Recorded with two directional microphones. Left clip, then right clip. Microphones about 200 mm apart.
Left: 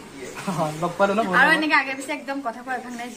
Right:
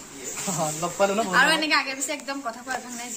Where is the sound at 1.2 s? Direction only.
20° right (ahead or behind).